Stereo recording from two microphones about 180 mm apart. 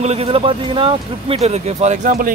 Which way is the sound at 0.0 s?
35° right (ahead or behind).